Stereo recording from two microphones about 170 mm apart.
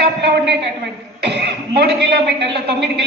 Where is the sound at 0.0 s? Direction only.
80° right.